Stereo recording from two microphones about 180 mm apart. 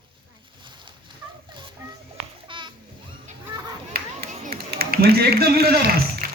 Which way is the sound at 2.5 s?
25° right (ahead or behind).